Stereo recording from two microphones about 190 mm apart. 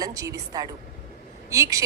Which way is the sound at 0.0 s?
20° right (ahead or behind).